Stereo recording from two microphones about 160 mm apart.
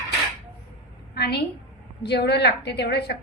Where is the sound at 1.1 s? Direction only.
90° left.